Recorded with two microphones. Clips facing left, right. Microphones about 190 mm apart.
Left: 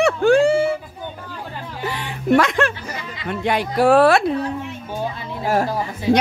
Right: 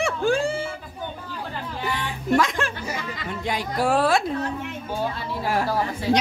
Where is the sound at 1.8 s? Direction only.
65° left (ahead or behind).